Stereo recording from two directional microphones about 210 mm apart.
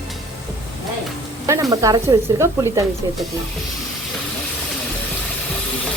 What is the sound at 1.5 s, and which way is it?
Speech, 15° right (ahead or behind).